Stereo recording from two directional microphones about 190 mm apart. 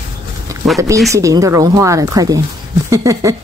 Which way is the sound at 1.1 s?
15° right (ahead or behind).